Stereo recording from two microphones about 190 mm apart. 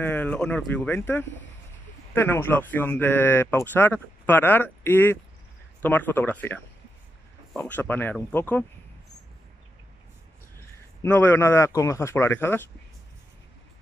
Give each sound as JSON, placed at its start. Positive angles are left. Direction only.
{"t": 0.0, "sound": "speech", "side_deg": 10}
{"t": 11.0, "sound": "speech", "side_deg": 10}